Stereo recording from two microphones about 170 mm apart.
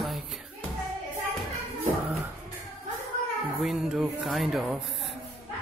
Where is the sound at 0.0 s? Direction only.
Centre (ahead or behind).